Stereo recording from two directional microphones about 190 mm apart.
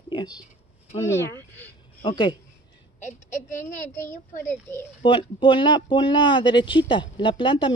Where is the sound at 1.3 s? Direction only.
10° left (ahead or behind).